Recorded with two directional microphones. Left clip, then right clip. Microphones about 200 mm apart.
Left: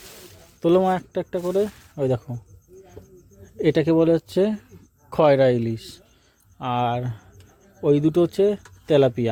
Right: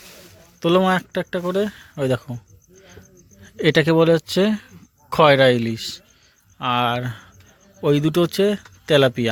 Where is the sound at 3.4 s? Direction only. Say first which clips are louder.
Right 3 dB; 5° left (ahead or behind).